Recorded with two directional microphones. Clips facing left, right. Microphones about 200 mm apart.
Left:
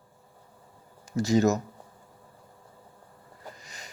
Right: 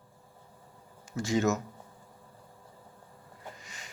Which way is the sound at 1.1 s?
40° left (ahead or behind).